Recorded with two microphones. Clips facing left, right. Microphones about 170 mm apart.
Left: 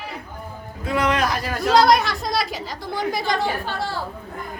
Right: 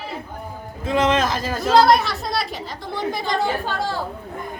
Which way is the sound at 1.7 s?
Centre (ahead or behind).